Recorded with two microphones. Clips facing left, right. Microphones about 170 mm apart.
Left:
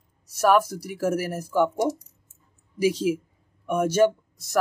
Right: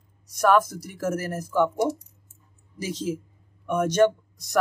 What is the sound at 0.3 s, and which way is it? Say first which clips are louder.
Speech: even; 10° left (ahead or behind).